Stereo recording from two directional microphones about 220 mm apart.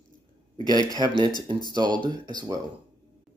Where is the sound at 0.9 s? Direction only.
20° right (ahead or behind).